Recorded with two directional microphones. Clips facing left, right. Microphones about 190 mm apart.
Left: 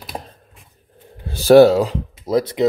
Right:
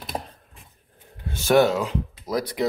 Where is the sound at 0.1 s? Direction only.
5° right (ahead or behind).